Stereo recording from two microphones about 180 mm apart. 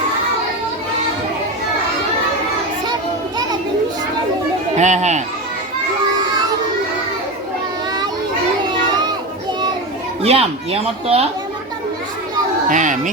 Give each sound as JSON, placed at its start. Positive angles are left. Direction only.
{"t": 4.8, "sound": "speech", "side_deg": -40}
{"t": 10.2, "sound": "speech", "side_deg": -35}
{"t": 12.6, "sound": "speech", "side_deg": -45}